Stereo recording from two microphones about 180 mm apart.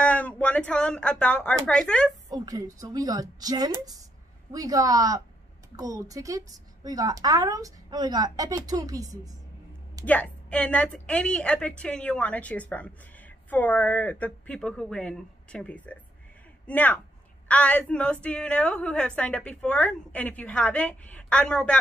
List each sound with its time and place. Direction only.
0.0 s speech: 5° left (ahead or behind)
2.3 s a woman's voice: 20° right (ahead or behind)
10.0 s a woman's voice: 10° left (ahead or behind)